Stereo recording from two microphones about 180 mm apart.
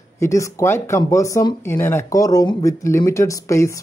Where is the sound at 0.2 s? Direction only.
15° left (ahead or behind).